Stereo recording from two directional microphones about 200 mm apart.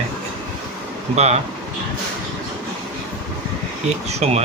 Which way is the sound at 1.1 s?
35° right (ahead or behind).